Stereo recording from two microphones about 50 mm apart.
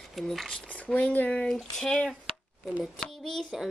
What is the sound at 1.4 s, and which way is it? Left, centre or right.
Speech, centre.